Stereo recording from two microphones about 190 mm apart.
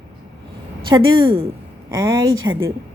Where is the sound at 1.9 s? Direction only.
15° right (ahead or behind).